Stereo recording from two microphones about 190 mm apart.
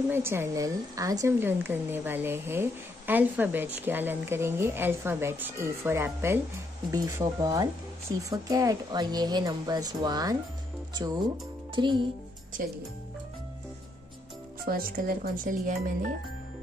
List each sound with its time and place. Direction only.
0.1 s speech: 15° right (ahead or behind)
11.7 s a child's voice: 25° right (ahead or behind)
14.6 s speech: 50° right (ahead or behind)